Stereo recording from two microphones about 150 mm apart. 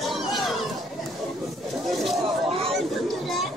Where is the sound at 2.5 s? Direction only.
40° right (ahead or behind).